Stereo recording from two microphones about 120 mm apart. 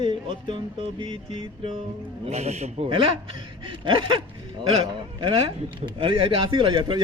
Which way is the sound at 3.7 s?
45° right (ahead or behind).